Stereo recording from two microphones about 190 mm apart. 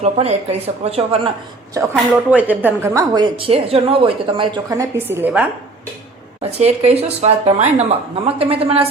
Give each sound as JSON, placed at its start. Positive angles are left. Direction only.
{"t": 0.0, "sound": "speech", "side_deg": -35}
{"t": 1.7, "sound": "a woman's voice", "side_deg": -10}
{"t": 4.8, "sound": "a woman's voice", "side_deg": -10}
{"t": 6.4, "sound": "speech", "side_deg": -35}